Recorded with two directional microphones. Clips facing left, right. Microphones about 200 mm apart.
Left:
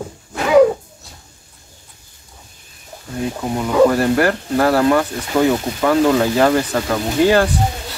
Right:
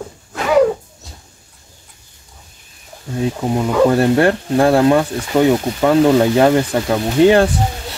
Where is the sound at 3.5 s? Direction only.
25° right (ahead or behind).